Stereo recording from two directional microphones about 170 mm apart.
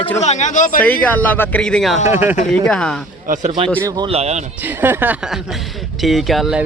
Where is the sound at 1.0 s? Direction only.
10° left (ahead or behind).